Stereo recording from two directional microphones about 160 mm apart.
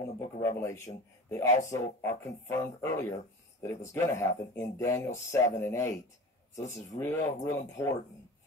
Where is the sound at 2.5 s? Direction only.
15° left (ahead or behind).